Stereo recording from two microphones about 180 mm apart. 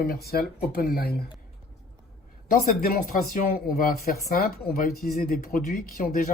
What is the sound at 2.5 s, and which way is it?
Speech, 50° left (ahead or behind).